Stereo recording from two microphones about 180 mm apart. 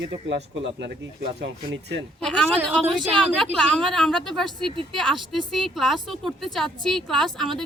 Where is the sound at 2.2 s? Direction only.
5° left (ahead or behind).